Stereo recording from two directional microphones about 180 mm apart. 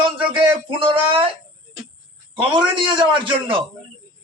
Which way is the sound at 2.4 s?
25° right (ahead or behind).